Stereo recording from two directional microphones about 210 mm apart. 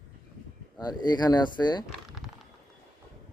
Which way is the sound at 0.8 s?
20° left (ahead or behind).